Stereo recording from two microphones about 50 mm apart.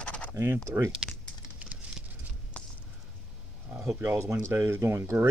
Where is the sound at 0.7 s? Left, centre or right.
Right.